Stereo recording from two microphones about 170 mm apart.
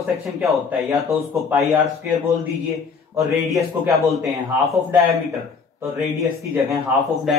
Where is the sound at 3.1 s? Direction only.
20° right (ahead or behind).